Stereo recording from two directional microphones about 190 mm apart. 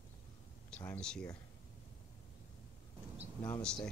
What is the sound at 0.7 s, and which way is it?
Speech, 10° left (ahead or behind).